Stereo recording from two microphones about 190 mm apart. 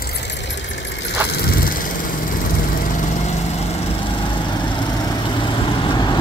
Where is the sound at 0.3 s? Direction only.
70° left (ahead or behind); by 1.9 s 50° left (ahead or behind).